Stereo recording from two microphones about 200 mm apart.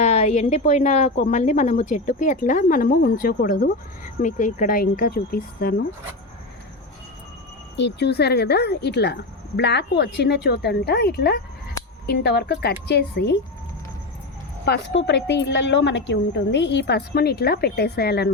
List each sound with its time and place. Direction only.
0.0 s a woman's voice: 30° left (ahead or behind); by 5.7 s 50° left (ahead or behind)
7.8 s a woman's voice: 60° left (ahead or behind)
14.6 s a woman's voice: 55° left (ahead or behind)